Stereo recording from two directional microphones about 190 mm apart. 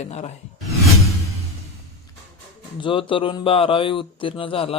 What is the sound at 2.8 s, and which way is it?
Speech, 25° left (ahead or behind).